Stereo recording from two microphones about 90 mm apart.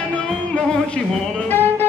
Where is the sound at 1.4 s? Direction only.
20° left (ahead or behind).